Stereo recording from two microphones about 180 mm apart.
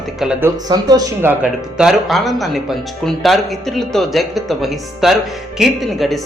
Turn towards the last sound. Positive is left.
turn(degrees=0)  # may be behind; listen again after turning